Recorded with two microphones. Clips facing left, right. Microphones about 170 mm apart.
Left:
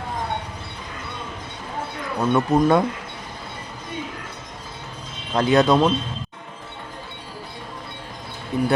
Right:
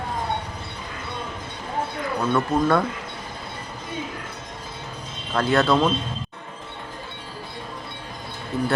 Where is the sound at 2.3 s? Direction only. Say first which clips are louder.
Left 3 dB; 20° left (ahead or behind).